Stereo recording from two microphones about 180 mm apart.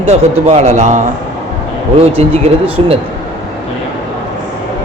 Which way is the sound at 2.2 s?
35° right (ahead or behind).